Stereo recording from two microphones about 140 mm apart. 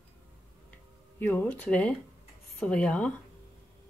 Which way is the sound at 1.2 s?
15° left (ahead or behind).